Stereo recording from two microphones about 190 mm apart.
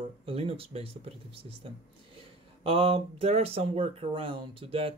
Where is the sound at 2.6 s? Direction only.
30° right (ahead or behind).